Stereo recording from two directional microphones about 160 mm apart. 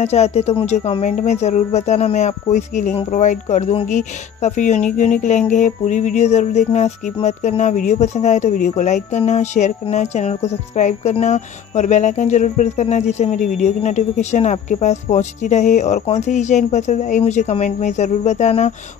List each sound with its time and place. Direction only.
0.0 s speech: 40° left (ahead or behind)